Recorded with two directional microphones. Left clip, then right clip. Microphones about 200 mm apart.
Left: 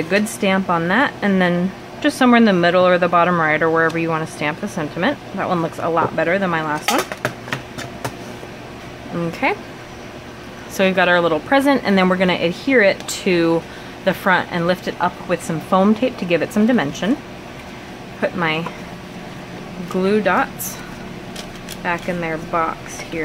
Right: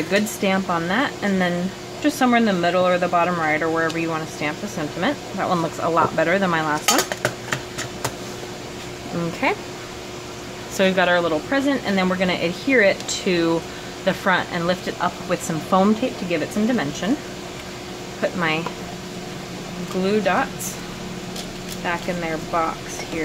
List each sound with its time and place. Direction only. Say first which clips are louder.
0.1 s speech: left 3 dB; 10° left (ahead or behind)
9.4 s speech: left 2 dB; 5° left (ahead or behind)
10.8 s speech: left 3 dB; 10° left (ahead or behind)
18.2 s speech: left 2 dB; 10° left (ahead or behind)
20.1 s speech: left 3 dB; 15° left (ahead or behind)
21.8 s speech: left 3 dB; 10° left (ahead or behind)